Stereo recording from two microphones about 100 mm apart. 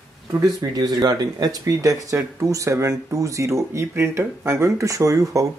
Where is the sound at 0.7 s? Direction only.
40° right (ahead or behind).